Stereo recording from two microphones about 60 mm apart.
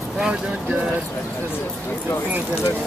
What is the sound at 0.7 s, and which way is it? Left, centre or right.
Speech, right.